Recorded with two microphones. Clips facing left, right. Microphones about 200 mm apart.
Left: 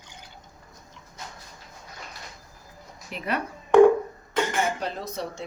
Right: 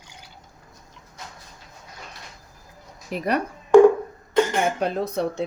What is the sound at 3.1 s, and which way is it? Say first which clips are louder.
Speech: right 6 dB; 40° right (ahead or behind).